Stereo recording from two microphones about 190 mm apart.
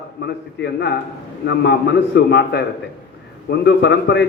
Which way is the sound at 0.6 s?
65° left (ahead or behind).